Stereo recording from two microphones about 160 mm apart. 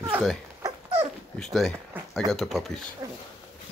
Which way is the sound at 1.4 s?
Centre (ahead or behind).